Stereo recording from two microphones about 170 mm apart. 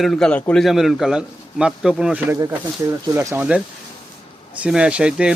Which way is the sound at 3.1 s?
20° right (ahead or behind).